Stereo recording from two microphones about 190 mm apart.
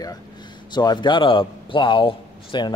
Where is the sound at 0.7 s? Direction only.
25° left (ahead or behind).